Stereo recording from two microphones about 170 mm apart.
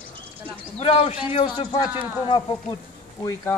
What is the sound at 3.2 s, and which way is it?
Speech, 15° left (ahead or behind).